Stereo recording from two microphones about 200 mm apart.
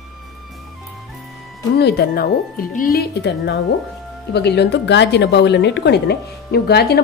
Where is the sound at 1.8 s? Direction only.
55° left (ahead or behind).